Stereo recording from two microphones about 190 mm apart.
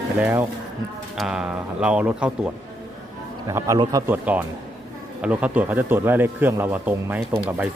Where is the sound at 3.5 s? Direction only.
15° right (ahead or behind).